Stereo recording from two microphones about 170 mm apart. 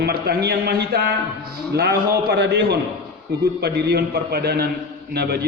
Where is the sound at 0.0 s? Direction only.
70° right (ahead or behind).